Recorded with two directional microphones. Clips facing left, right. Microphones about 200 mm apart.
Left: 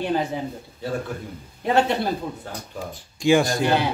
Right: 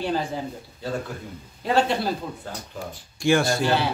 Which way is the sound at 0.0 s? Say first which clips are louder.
Left 2 dB; 20° left (ahead or behind).